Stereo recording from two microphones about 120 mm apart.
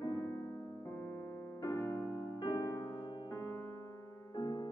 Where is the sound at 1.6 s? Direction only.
25° left (ahead or behind).